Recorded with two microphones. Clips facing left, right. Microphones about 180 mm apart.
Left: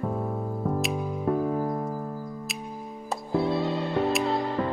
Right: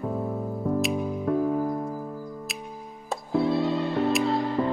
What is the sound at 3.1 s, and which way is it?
Music, centre (ahead or behind).